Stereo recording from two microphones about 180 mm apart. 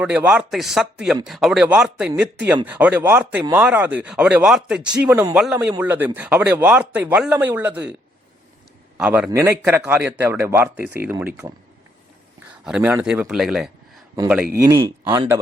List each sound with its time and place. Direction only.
0.0 s a man's voice: 10° right (ahead or behind)
9.0 s a man's voice: 5° right (ahead or behind)
12.6 s speech: 5° right (ahead or behind)
14.5 s a man's voice: 20° right (ahead or behind)